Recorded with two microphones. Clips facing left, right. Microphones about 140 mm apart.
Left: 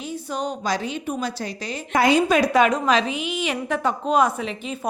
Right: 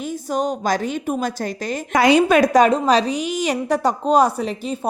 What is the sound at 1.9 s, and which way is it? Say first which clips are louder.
Speech: right 3 dB; 80° right.